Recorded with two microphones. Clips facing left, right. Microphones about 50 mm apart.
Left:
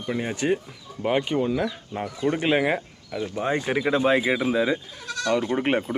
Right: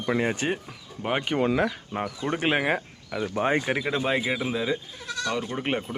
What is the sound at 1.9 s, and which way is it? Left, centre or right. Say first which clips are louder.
Speech: right 1 dB; right.